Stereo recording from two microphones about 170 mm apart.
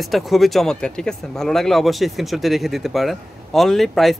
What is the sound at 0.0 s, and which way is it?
Speech, centre (ahead or behind).